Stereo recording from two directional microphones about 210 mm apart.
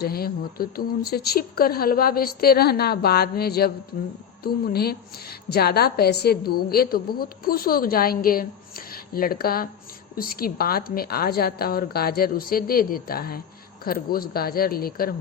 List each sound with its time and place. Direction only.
0.0 s a woman's voice: 45° left (ahead or behind)